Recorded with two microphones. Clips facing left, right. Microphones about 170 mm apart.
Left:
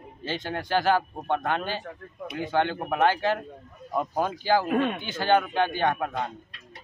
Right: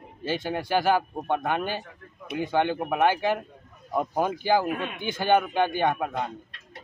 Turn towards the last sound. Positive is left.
turn(degrees=-5)  # may be behind; listen again after turning